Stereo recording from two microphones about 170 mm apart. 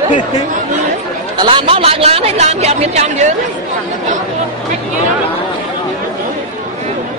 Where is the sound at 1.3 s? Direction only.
30° right (ahead or behind).